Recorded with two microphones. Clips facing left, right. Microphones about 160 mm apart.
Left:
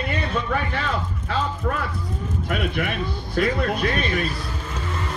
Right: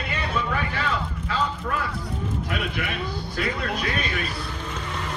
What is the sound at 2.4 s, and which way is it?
Speech, 50° left (ahead or behind).